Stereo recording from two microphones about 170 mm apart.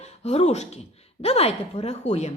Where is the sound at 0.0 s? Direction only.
40° left (ahead or behind).